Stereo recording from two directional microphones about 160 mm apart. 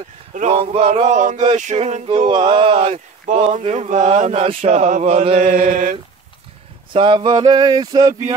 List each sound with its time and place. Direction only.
0.3 s speech: 45° right (ahead or behind)
1.0 s speech: 50° right (ahead or behind)
6.9 s a sound: 30° right (ahead or behind)